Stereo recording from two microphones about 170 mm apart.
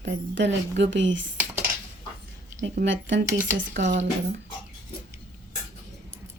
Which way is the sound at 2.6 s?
90° right.